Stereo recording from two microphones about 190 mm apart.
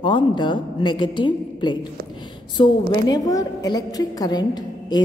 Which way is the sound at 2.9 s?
20° left (ahead or behind).